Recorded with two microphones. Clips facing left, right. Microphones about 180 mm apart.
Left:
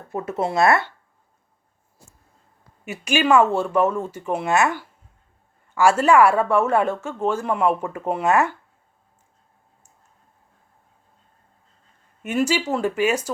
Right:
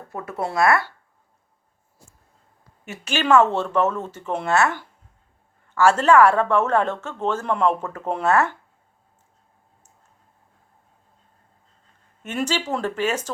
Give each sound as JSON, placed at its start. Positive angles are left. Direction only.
{"t": 0.1, "sound": "speech", "side_deg": 20}
{"t": 2.8, "sound": "speech", "side_deg": 10}
{"t": 12.2, "sound": "speech", "side_deg": 10}